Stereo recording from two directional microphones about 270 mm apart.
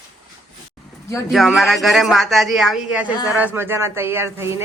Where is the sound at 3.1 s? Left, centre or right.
Centre.